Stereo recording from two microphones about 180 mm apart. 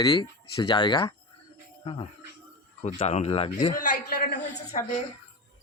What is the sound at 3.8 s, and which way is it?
Speech, 60° left (ahead or behind).